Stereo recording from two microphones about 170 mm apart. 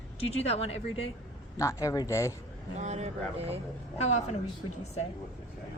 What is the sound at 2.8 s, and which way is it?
Speech, 40° right (ahead or behind).